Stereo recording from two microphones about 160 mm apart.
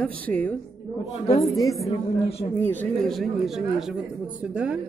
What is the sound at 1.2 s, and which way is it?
Speech, 20° left (ahead or behind).